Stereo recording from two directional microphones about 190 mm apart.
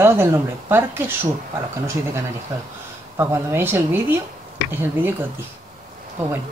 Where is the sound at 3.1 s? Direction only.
15° right (ahead or behind).